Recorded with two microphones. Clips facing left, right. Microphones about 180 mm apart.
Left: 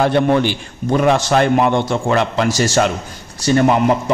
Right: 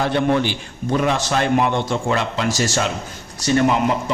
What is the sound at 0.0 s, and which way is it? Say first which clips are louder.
A man's voice: left 4 dB; 55° left (ahead or behind).